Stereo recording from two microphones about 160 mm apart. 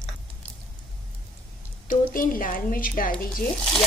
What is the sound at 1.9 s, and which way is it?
Speech, 60° left (ahead or behind).